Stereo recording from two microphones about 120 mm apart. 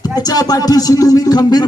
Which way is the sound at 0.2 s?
30° left (ahead or behind).